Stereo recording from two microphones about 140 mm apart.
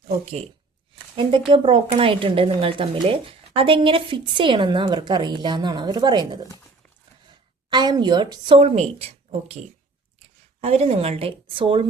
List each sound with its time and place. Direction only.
1.1 s speech: 40° right (ahead or behind)
7.7 s speech: 30° right (ahead or behind); by 9.0 s 50° right (ahead or behind)
10.6 s a woman's voice: 50° right (ahead or behind)